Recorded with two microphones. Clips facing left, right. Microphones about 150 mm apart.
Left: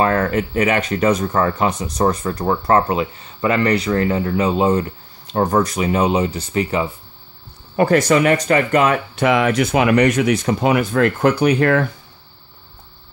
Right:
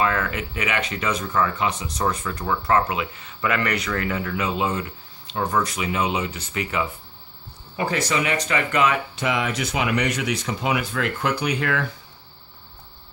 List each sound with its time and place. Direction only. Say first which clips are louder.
0.0 s speech: left 7 dB; 40° left (ahead or behind)
7.7 s speech: left 10 dB; 55° left (ahead or behind)